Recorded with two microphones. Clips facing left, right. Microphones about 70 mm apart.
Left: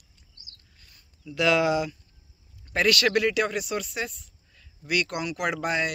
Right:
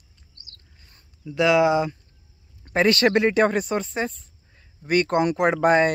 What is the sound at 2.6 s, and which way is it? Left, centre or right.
Speech, right.